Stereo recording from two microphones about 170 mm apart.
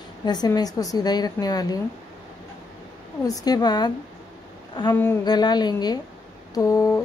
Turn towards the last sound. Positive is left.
turn(degrees=20)  # may be behind; listen again after turning